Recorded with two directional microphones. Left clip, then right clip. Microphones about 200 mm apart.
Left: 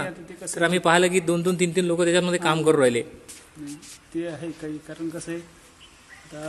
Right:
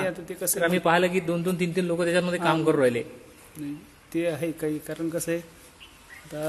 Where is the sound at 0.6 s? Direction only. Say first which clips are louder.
Left 3 dB; 40° left (ahead or behind).